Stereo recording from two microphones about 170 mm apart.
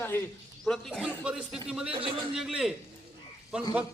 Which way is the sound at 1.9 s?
30° right (ahead or behind).